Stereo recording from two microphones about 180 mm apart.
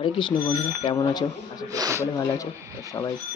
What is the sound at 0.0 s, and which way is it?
Speech, 25° left (ahead or behind).